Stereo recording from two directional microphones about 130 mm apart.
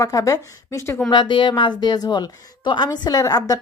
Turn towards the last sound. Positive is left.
turn(degrees=30)  # may be behind; listen again after turning